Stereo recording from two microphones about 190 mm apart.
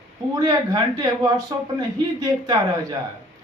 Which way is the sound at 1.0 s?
20° right (ahead or behind).